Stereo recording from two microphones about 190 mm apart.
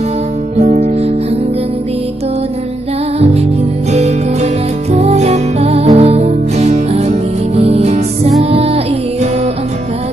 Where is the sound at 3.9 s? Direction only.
35° right (ahead or behind).